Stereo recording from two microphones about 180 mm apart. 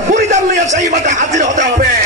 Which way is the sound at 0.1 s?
45° right (ahead or behind).